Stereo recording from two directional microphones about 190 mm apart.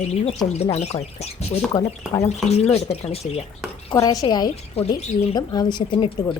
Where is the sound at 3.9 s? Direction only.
20° left (ahead or behind).